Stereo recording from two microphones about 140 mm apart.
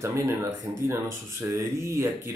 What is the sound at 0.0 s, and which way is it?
Speech, 20° right (ahead or behind).